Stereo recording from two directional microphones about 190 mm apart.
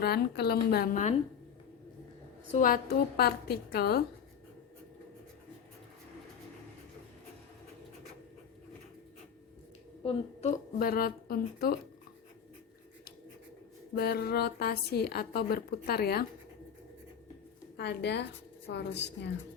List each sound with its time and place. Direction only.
0.0 s a woman's voice: 60° left (ahead or behind)
2.5 s a woman's voice: 45° left (ahead or behind)
10.0 s speech: 30° left (ahead or behind)
10.8 s a woman's voice: 50° left (ahead or behind)
13.9 s a woman's voice: 55° left (ahead or behind)
17.7 s a woman's voice: 60° left (ahead or behind)